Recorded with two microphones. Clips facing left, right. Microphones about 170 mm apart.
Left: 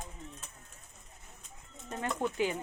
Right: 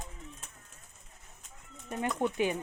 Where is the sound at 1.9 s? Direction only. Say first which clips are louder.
Right 3 dB; 15° right (ahead or behind).